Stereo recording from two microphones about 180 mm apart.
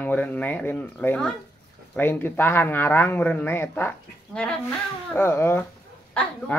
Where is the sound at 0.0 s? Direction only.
10° left (ahead or behind).